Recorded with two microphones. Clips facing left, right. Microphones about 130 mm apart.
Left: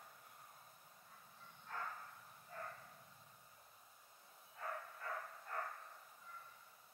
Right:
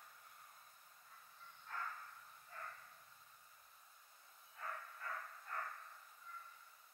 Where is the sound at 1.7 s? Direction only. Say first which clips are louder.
Left 1 dB; 15° left (ahead or behind).